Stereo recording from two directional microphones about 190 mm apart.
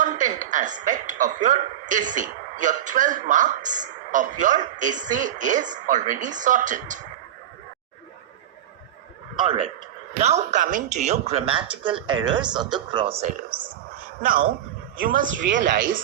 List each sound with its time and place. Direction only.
0.0 s speech: 40° right (ahead or behind)
10.2 s speech: 35° right (ahead or behind)
14.2 s speech: 50° right (ahead or behind)
15.6 s speech: 65° right (ahead or behind)